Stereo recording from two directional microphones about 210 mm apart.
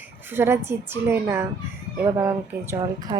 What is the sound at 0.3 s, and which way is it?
Speech, 10° right (ahead or behind).